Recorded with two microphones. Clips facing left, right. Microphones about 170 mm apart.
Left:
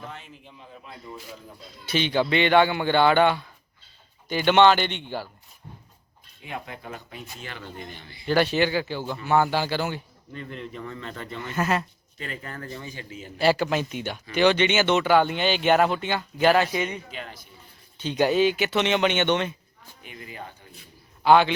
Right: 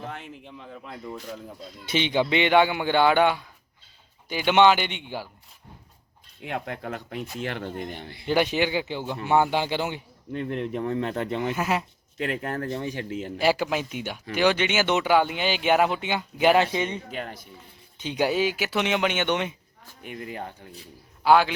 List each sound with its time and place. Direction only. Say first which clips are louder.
0.1 s speech: right 4 dB; 65° right (ahead or behind)
1.9 s speech: even; 20° right (ahead or behind)
6.4 s speech: right 5 dB; 70° right (ahead or behind)
8.3 s a man's voice: left 1 dB; 15° right (ahead or behind)
10.3 s speech: right 8 dB; 65° right (ahead or behind)
11.5 s speech: left 1 dB; 10° right (ahead or behind)
12.1 s speech: right 8 dB; 70° right (ahead or behind)
13.4 s speech: left 2 dB; 10° right (ahead or behind); by 17.0 s 25° right (ahead or behind)
17.1 s speech: right 4 dB; 50° right (ahead or behind)
18.0 s speech: left 3 dB; 10° right (ahead or behind)
20.0 s speech: right 7 dB; 55° right (ahead or behind)
21.2 s a man's voice: left 1 dB; 5° right (ahead or behind)